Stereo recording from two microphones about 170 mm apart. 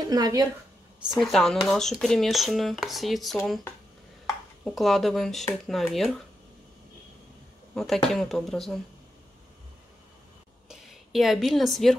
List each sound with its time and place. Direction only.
0.1 s speech: 20° right (ahead or behind)
1.1 s speech: centre (ahead or behind)
4.6 s speech: centre (ahead or behind)
7.7 s speech: centre (ahead or behind)
10.7 s a woman's voice: centre (ahead or behind)